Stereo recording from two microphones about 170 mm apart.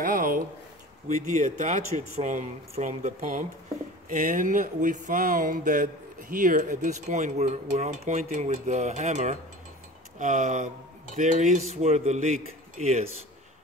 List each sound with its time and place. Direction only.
0.0 s speech: 55° right (ahead or behind)
1.0 s a sound: 45° right (ahead or behind)
11.7 s speech: 40° right (ahead or behind)